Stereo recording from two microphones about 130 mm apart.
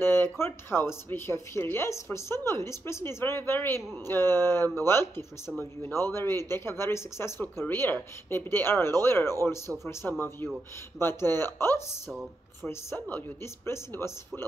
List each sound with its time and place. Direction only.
0.0 s speech: 15° left (ahead or behind)